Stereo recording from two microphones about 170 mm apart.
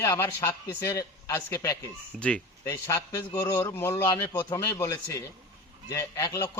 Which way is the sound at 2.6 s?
20° left (ahead or behind).